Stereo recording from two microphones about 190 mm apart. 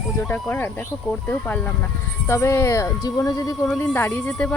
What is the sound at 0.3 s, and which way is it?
Speech, 10° left (ahead or behind).